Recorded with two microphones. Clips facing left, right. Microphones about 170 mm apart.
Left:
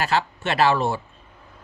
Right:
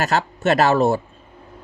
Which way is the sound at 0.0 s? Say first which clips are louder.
Right 3 dB; 45° right (ahead or behind).